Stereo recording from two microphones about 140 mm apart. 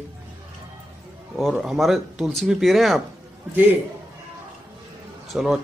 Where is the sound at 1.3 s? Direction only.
5° right (ahead or behind).